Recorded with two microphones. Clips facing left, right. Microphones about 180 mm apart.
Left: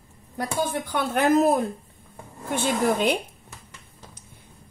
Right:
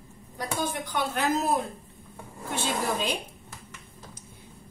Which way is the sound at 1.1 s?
55° left (ahead or behind).